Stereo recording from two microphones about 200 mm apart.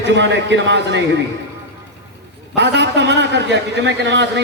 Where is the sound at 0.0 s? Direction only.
60° right (ahead or behind).